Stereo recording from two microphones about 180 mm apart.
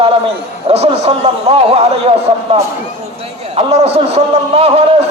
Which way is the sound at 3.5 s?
35° right (ahead or behind).